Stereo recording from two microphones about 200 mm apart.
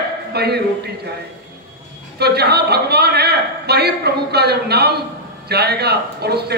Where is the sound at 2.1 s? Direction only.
55° right (ahead or behind).